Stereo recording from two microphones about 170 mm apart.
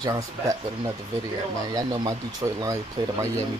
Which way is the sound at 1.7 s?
25° right (ahead or behind).